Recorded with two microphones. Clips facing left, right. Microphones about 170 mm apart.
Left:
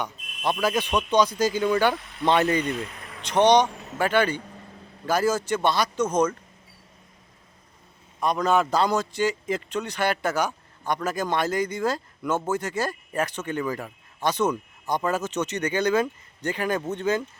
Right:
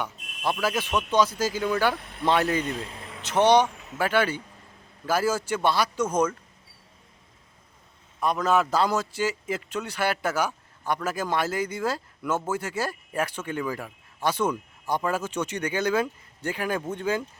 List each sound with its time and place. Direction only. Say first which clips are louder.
0.6 s speech: left 3 dB; 5° right (ahead or behind)
2.0 s speech: right 1 dB; 55° right (ahead or behind)
2.2 s speech: left 2 dB; centre (ahead or behind)
2.7 s speech: left 2 dB; 30° right (ahead or behind)
3.2 s a man's voice: left 1 dB; 5° right (ahead or behind)
8.2 s a man's voice: left 1 dB; 5° right (ahead or behind)